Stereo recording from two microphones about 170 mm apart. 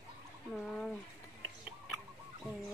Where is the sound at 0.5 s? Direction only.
5° left (ahead or behind).